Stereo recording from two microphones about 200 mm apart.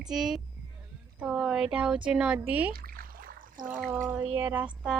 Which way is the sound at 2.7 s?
50° right (ahead or behind).